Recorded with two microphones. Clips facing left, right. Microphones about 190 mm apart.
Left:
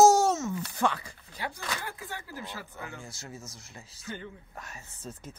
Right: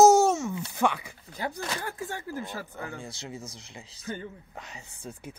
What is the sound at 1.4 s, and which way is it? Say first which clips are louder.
Speech: right 4 dB; 40° right (ahead or behind).